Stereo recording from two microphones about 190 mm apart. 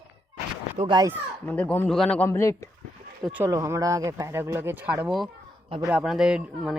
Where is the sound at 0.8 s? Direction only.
25° right (ahead or behind).